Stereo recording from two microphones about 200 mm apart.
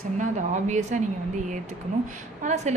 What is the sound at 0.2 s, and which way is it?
A woman's voice, 35° right (ahead or behind).